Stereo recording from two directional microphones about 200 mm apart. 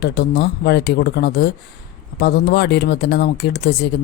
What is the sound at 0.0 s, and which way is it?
Speech, 55° left (ahead or behind).